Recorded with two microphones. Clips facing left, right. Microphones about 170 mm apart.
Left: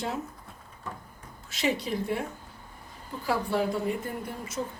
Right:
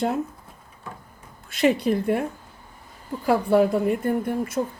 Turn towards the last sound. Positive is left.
turn(degrees=-55)  # may be behind; listen again after turning